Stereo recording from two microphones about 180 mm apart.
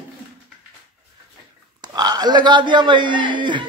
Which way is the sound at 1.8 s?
20° right (ahead or behind).